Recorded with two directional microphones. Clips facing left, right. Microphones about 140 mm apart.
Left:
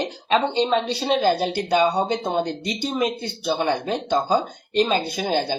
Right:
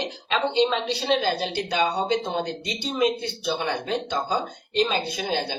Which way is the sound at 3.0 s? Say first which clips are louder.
Right 1 dB; 35° left (ahead or behind).